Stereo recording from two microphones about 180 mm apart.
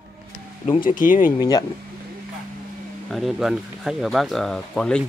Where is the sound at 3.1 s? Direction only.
Centre (ahead or behind).